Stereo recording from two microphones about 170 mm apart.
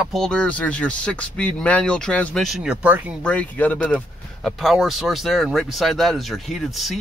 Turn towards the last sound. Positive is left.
turn(degrees=0)  # may be behind; listen again after turning